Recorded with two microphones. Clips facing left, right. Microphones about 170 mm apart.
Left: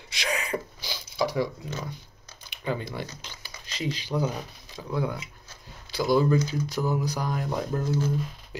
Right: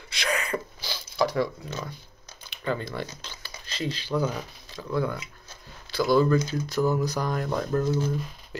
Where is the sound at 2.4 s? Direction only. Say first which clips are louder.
Right 1 dB; 15° left (ahead or behind).